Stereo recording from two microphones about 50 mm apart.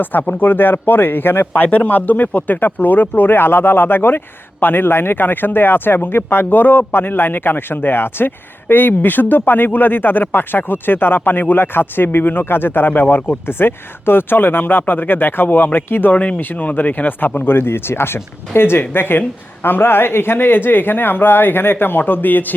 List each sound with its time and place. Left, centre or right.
0.0 s speech: left